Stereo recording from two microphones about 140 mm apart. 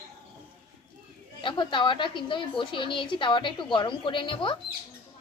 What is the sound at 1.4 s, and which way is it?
A woman's voice, 35° left (ahead or behind).